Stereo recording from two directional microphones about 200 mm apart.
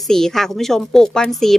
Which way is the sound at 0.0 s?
Centre (ahead or behind).